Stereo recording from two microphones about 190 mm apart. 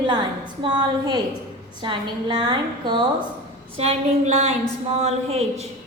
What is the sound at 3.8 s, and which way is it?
Speech, 35° right (ahead or behind).